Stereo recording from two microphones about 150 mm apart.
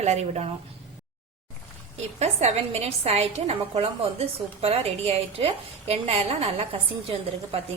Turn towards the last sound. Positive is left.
turn(degrees=-40)  # may be behind; listen again after turning